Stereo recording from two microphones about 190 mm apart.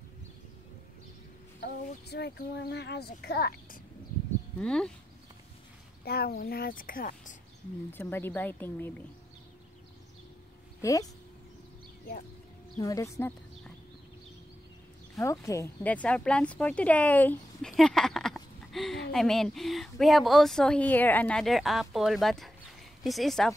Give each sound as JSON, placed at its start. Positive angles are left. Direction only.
{"t": 1.6, "sound": "speech", "side_deg": 60}
{"t": 4.6, "sound": "speech", "side_deg": 5}
{"t": 6.0, "sound": "a woman's voice", "side_deg": 55}
{"t": 7.9, "sound": "a woman's voice", "side_deg": 10}
{"t": 10.8, "sound": "speech", "side_deg": 15}
{"t": 12.8, "sound": "a woman's voice", "side_deg": 15}
{"t": 15.4, "sound": "speech", "side_deg": 15}